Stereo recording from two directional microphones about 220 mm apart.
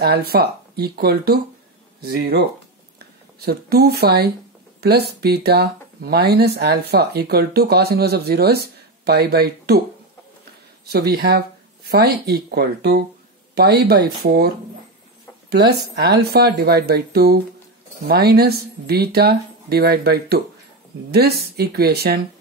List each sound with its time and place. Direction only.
0.3 s speech: 45° right (ahead or behind)
10.9 s speech: 45° right (ahead or behind)
15.5 s speech: 50° right (ahead or behind)